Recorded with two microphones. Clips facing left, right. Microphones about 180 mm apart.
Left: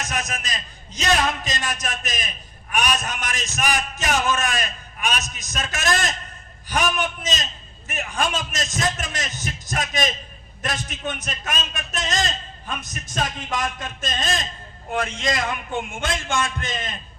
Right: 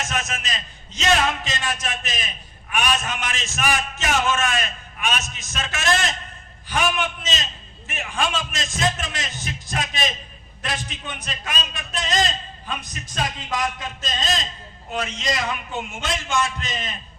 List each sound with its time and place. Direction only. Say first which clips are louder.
0.0 s a man's voice: right 1 dB; 35° left (ahead or behind)
13.7 s a man's voice: left 1 dB; 50° left (ahead or behind)